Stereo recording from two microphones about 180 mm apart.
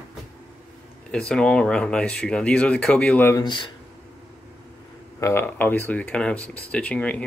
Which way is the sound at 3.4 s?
25° left (ahead or behind).